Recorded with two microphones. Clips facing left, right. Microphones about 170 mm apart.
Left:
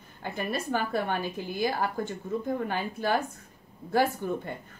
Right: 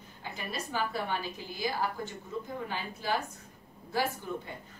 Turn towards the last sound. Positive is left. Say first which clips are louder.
# left 6 dB
turn(degrees=55)  # may be behind; listen again after turning